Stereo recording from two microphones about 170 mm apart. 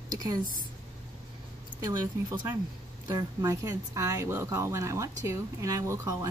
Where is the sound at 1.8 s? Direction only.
20° right (ahead or behind).